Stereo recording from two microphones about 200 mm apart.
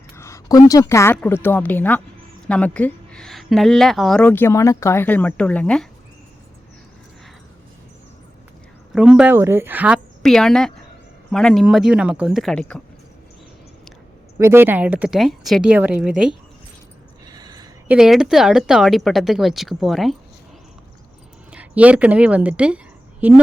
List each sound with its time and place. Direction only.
0.2 s a sound: 15° left (ahead or behind)
0.7 s a woman's voice: 15° left (ahead or behind)
8.9 s speech: 5° right (ahead or behind)
14.3 s speech: 10° right (ahead or behind)
17.2 s a sound: 20° right (ahead or behind)
17.8 s speech: 5° right (ahead or behind)
21.5 s a woman's voice: 5° right (ahead or behind)